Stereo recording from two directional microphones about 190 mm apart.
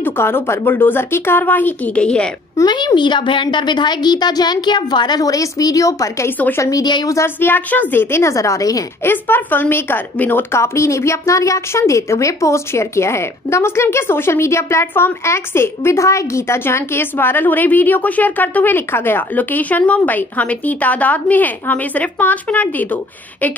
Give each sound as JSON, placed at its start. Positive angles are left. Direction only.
{"t": 0.0, "sound": "a woman's voice", "side_deg": 10}
{"t": 2.5, "sound": "a woman's voice", "side_deg": 20}